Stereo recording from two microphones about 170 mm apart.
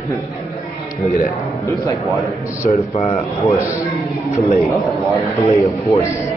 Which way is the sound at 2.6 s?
40° left (ahead or behind).